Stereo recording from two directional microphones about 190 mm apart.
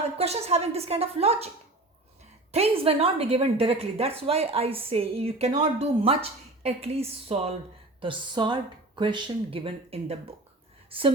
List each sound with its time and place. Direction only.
0.2 s a woman's voice: 35° right (ahead or behind)
2.5 s a woman's voice: 30° right (ahead or behind)